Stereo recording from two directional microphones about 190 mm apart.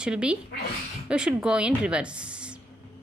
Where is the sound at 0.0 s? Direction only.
5° right (ahead or behind).